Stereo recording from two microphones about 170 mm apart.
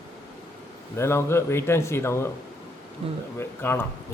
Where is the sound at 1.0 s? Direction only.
15° left (ahead or behind).